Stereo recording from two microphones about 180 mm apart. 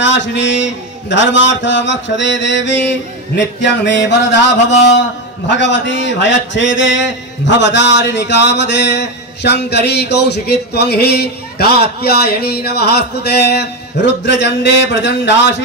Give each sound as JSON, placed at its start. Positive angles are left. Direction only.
{"t": 0.0, "sound": "a man's voice", "side_deg": 90}
{"t": 5.6, "sound": "a man's voice", "side_deg": 90}